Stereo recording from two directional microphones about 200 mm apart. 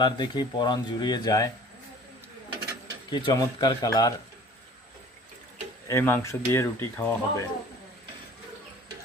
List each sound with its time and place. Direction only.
0.0 s speech: 20° left (ahead or behind)
3.1 s speech: 20° left (ahead or behind)
5.9 s speech: 15° left (ahead or behind)